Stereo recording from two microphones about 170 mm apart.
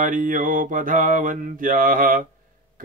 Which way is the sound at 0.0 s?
50° right (ahead or behind).